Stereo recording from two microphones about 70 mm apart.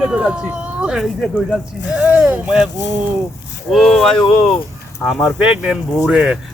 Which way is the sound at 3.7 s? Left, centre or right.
Centre.